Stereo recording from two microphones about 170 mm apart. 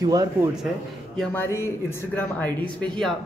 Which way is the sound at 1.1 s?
5° left (ahead or behind).